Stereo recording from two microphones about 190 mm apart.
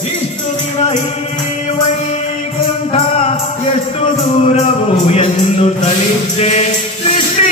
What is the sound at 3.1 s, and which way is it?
Music, 35° left (ahead or behind).